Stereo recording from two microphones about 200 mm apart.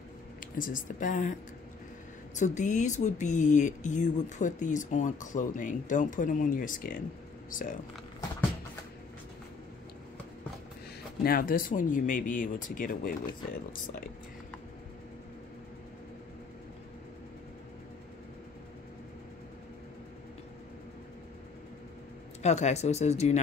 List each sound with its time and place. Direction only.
0.4 s a woman's voice: 40° left (ahead or behind)
2.3 s speech: 35° left (ahead or behind)
11.2 s speech: 45° left (ahead or behind)
22.4 s speech: 35° left (ahead or behind)